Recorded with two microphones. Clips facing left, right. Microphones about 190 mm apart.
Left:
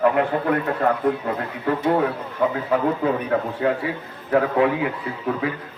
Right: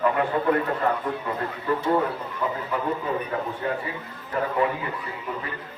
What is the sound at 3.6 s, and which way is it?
A man's voice, 80° left.